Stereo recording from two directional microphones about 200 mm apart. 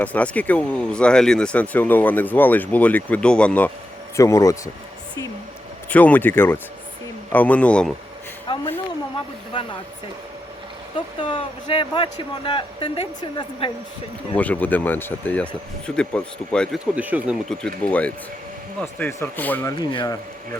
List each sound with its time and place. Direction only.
0.0 s speech: 5° left (ahead or behind)
5.9 s speech: 10° left (ahead or behind)
8.5 s a sound: 25° left (ahead or behind)
11.2 s a man's voice: 25° left (ahead or behind)
14.3 s speech: 10° left (ahead or behind)
16.9 s speech: 10° right (ahead or behind)
17.5 s speech: 5° left (ahead or behind)
19.7 s a man's voice: 25° left (ahead or behind)